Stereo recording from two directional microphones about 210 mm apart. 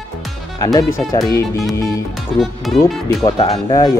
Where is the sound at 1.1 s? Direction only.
15° left (ahead or behind).